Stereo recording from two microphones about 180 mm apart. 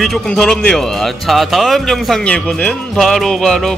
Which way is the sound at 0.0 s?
5° left (ahead or behind).